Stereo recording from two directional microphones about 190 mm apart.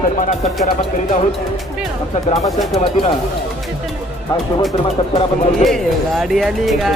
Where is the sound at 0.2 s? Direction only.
40° left (ahead or behind).